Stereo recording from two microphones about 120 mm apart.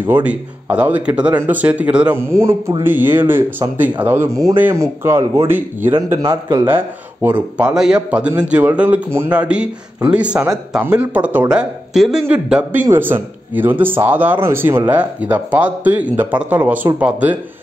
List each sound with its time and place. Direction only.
0.0 s speech: 15° right (ahead or behind)
2.1 s speech: 20° right (ahead or behind)